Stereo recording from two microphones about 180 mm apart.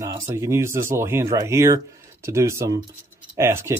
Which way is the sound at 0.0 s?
15° right (ahead or behind).